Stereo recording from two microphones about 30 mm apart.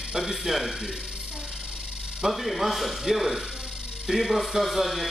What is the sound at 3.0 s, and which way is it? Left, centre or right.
Speech, centre.